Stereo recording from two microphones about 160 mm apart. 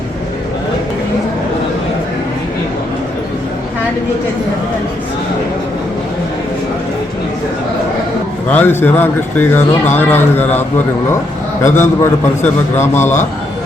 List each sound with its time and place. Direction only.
8.4 s a man's voice: 10° left (ahead or behind)